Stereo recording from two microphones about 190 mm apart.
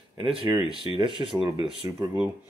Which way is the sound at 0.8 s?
25° right (ahead or behind).